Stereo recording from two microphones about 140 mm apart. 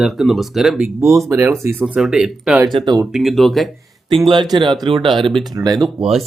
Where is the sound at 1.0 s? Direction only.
20° right (ahead or behind); by 2.6 s 5° right (ahead or behind).